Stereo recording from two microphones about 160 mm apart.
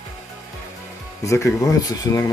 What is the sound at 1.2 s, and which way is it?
Speech, 20° left (ahead or behind).